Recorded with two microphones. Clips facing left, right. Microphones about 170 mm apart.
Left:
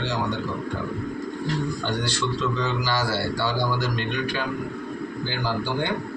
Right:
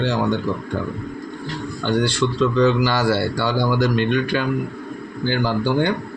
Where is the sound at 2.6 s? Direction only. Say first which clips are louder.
Right 8 dB; 60° right (ahead or behind).